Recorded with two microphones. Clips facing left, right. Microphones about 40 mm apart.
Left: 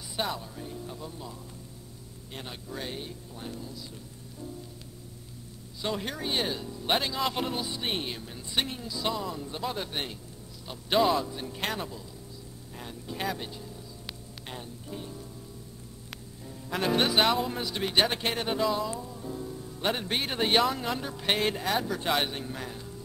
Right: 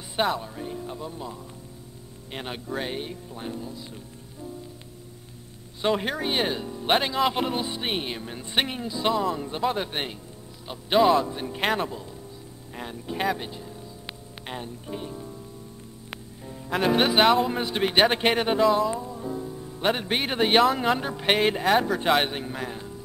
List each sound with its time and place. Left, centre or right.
0.4 s speech: right
2.3 s speech: right
5.8 s speech: right
10.7 s speech: centre
11.2 s speech: right
16.1 s music: right
16.7 s speech: centre
17.5 s speech: right
18.6 s speech: centre